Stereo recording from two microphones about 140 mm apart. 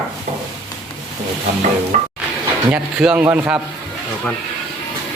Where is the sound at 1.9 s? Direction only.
50° right (ahead or behind).